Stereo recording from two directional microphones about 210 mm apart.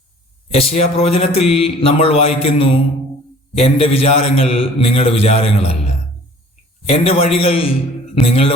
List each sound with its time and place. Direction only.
0.5 s speech: 30° left (ahead or behind)
6.8 s speech: 30° left (ahead or behind)